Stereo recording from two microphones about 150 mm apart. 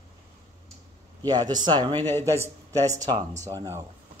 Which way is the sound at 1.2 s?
25° right (ahead or behind).